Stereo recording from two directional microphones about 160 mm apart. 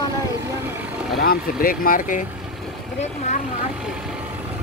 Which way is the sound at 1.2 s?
65° left (ahead or behind).